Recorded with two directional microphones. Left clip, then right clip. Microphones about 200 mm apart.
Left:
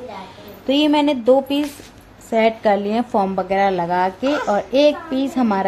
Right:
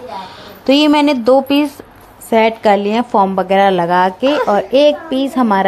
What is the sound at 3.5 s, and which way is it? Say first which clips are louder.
A woman's voice: right 6 dB; 25° right (ahead or behind).